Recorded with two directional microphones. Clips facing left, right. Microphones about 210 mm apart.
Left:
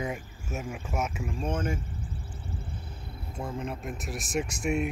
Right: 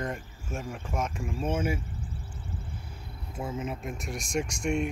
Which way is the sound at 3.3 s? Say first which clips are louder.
Right 1 dB; 5° right (ahead or behind).